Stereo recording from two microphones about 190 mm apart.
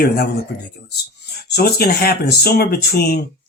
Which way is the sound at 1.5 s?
55° left (ahead or behind).